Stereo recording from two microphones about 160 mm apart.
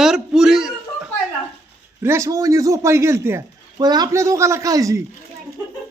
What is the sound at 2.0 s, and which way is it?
Speech, 15° right (ahead or behind).